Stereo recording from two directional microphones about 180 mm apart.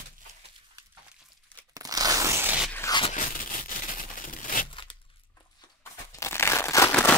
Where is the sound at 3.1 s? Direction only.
45° left (ahead or behind).